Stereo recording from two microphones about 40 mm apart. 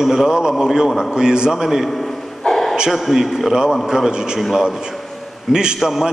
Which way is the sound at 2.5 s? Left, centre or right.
Centre.